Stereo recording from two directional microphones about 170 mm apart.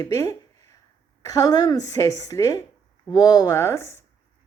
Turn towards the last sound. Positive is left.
turn(degrees=15)  # may be behind; listen again after turning